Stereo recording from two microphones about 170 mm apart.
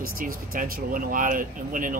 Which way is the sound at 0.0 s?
55° right (ahead or behind).